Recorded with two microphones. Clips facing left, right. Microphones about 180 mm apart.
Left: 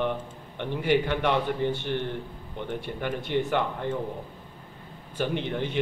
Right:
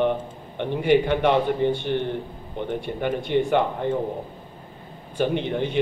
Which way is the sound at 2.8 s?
20° right (ahead or behind).